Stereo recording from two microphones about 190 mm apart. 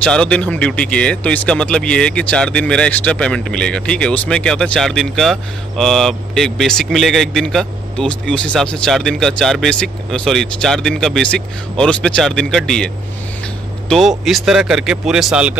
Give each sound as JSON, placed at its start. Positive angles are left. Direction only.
{"t": 0.0, "sound": "speech", "side_deg": 5}